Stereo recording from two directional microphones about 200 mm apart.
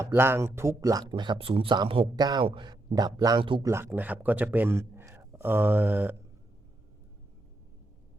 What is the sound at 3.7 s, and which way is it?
Speech, 10° right (ahead or behind).